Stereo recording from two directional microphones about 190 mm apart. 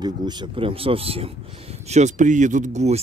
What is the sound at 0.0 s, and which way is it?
Speech, 25° right (ahead or behind).